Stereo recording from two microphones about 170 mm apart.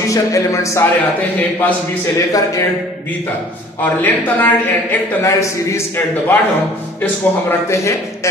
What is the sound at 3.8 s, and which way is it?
A man's voice, 10° left (ahead or behind).